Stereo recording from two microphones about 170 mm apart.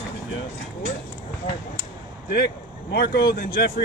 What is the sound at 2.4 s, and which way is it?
Speech, 75° left (ahead or behind).